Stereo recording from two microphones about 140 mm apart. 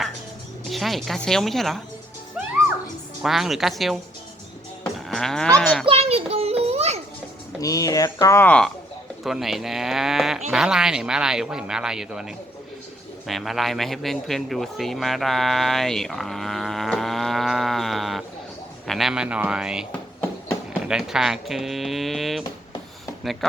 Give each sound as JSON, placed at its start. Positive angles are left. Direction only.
{"t": 0.7, "sound": "speech", "side_deg": 0}
{"t": 3.2, "sound": "speech", "side_deg": 0}
{"t": 4.9, "sound": "cattle", "side_deg": 0}
{"t": 5.5, "sound": "speech", "side_deg": 5}
{"t": 5.8, "sound": "a sound", "side_deg": -45}
{"t": 7.6, "sound": "speech", "side_deg": 25}
{"t": 9.2, "sound": "speech", "side_deg": 0}